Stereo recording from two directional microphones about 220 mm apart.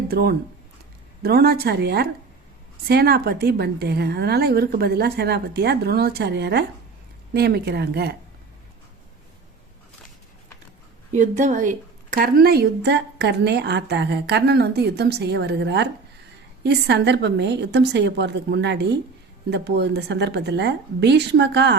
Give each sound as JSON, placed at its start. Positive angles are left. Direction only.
{"t": 0.1, "sound": "speech", "side_deg": -45}
{"t": 11.1, "sound": "speech", "side_deg": -35}